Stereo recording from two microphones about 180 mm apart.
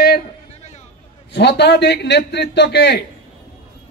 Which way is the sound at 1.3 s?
70° left (ahead or behind).